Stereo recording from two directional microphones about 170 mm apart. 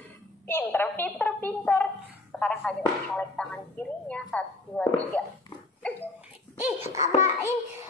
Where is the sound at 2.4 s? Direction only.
5° left (ahead or behind).